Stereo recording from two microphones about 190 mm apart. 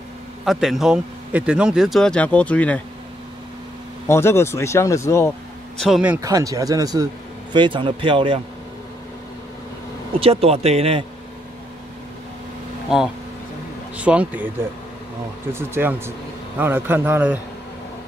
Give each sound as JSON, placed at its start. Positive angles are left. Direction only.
{"t": 0.5, "sound": "a man's voice", "side_deg": 0}
{"t": 4.1, "sound": "speech", "side_deg": 15}
{"t": 5.8, "sound": "a man's voice", "side_deg": 0}
{"t": 6.2, "sound": "a man's voice", "side_deg": -15}
{"t": 10.2, "sound": "speech", "side_deg": -30}
{"t": 12.9, "sound": "a man's voice", "side_deg": -5}
{"t": 15.5, "sound": "speech", "side_deg": -10}